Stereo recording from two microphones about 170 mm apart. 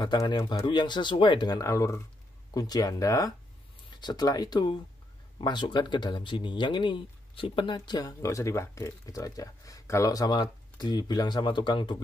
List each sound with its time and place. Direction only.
0.0 s speech: 25° left (ahead or behind)